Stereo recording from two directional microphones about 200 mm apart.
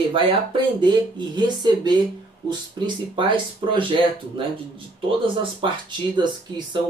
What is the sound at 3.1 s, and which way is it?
Speech, 25° right (ahead or behind).